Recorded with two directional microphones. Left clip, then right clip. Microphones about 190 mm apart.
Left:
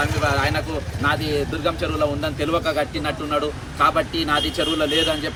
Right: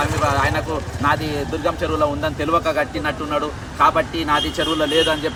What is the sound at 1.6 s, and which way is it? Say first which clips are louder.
Speech: right 4 dB; 15° right (ahead or behind).